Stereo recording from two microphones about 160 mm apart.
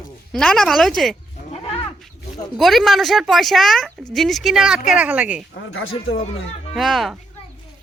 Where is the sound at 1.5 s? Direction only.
40° left (ahead or behind).